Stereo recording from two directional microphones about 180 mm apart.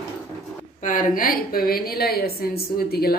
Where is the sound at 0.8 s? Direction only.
45° left (ahead or behind).